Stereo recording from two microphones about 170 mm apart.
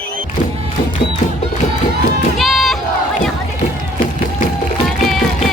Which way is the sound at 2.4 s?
Centre (ahead or behind).